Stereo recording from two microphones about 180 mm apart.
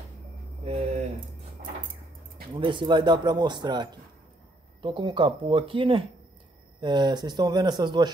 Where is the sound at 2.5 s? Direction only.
25° right (ahead or behind).